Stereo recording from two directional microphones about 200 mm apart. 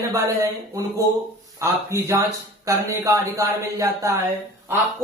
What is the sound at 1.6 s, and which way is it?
A man's voice, 15° right (ahead or behind).